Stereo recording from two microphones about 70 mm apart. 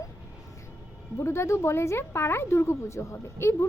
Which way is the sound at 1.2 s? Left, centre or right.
Left.